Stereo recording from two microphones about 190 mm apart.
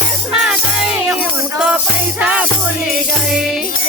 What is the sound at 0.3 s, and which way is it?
Music, 5° right (ahead or behind).